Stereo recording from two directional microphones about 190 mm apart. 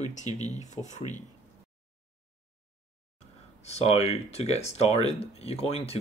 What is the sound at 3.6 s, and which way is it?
Speech, 35° left (ahead or behind).